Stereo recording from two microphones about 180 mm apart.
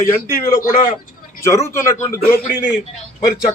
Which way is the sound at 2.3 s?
65° left (ahead or behind).